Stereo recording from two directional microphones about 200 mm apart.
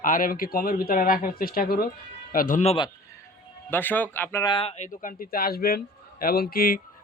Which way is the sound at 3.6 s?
10° left (ahead or behind).